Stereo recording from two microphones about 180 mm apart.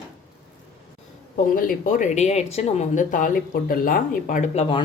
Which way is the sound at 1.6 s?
50° left (ahead or behind).